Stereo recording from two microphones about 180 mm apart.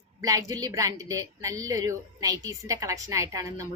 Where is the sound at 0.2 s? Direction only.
20° right (ahead or behind).